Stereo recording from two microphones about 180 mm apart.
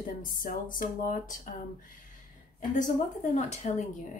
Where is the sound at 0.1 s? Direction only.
50° left (ahead or behind).